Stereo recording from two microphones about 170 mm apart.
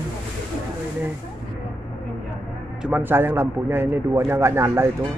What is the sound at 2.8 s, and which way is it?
A man's voice, 10° right (ahead or behind).